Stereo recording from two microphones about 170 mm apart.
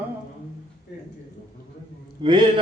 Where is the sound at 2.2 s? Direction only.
30° right (ahead or behind).